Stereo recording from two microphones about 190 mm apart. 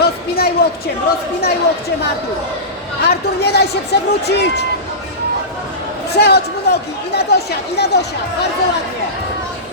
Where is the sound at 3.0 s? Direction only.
55° left (ahead or behind).